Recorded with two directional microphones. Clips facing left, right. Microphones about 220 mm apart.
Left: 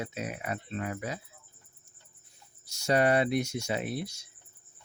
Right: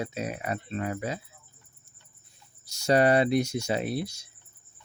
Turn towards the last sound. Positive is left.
turn(degrees=-35)  # may be behind; listen again after turning